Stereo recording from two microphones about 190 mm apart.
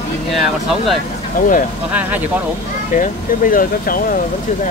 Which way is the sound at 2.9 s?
45° left (ahead or behind).